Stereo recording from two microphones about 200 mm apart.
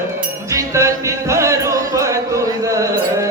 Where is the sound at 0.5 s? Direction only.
15° right (ahead or behind).